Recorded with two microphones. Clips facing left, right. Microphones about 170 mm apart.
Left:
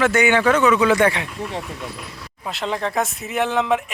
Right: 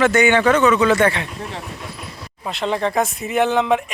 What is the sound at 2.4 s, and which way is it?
Speech, centre (ahead or behind).